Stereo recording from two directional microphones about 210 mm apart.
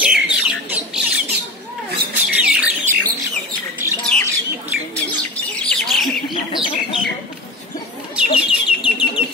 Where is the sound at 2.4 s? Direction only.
5° right (ahead or behind).